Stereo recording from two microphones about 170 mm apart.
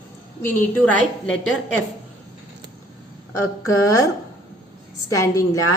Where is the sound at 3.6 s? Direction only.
20° left (ahead or behind).